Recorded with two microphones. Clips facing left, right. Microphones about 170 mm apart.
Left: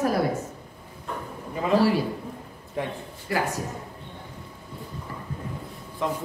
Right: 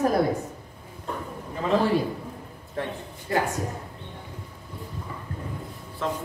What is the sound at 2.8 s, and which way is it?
Speech, 15° left (ahead or behind).